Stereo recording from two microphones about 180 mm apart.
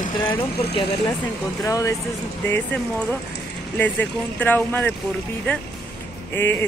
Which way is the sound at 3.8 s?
10° left (ahead or behind).